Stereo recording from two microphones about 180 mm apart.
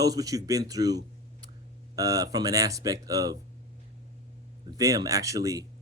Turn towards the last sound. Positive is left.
turn(degrees=-20)  # may be behind; listen again after turning